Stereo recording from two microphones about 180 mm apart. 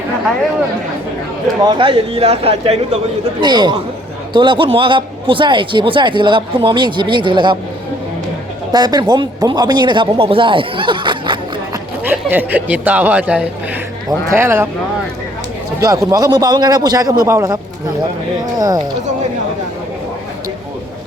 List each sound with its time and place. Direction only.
1.6 s speech: 25° right (ahead or behind)
3.4 s a man's voice: 25° right (ahead or behind)
8.7 s speech: 20° right (ahead or behind)
12.0 s speech: 10° right (ahead or behind)
15.8 s a man's voice: 20° right (ahead or behind)